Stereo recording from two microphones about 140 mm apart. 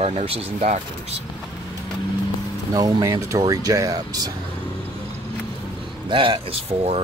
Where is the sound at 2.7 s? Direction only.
25° right (ahead or behind).